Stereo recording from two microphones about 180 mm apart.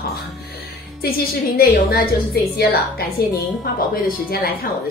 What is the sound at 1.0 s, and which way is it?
A woman's voice, 55° left (ahead or behind).